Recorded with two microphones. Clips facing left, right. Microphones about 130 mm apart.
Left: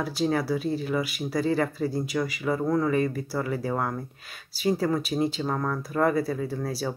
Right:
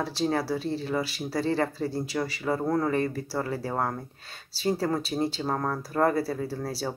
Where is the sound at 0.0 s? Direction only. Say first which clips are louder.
Left 1 dB; 30° right (ahead or behind).